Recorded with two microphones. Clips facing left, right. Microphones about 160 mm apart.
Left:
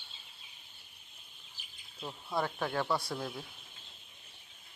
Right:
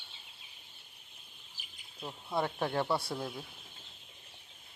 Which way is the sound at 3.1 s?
10° right (ahead or behind).